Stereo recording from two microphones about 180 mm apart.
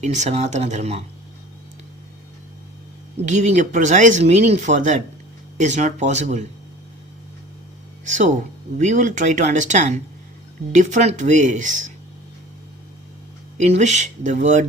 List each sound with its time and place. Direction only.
0.0 s speech: 40° right (ahead or behind)
3.2 s speech: 40° right (ahead or behind)
8.0 s speech: 45° right (ahead or behind)
13.6 s speech: 40° right (ahead or behind)